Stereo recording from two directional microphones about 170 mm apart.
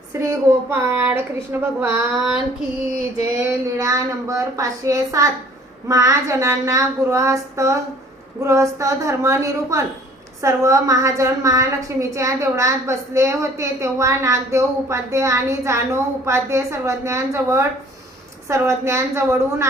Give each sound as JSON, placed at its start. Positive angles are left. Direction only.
{"t": 0.1, "sound": "a woman's voice", "side_deg": -15}
{"t": 3.4, "sound": "a woman's voice", "side_deg": -20}